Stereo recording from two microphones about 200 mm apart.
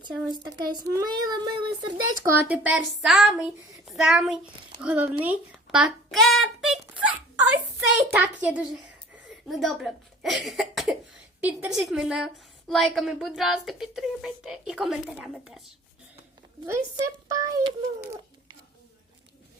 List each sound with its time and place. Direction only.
0.3 s a child's voice: 20° right (ahead or behind)
2.2 s a woman's voice: 5° right (ahead or behind)
16.6 s a child's voice: 15° right (ahead or behind)